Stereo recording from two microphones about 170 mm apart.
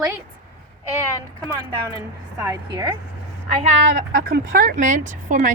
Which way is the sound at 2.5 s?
20° right (ahead or behind).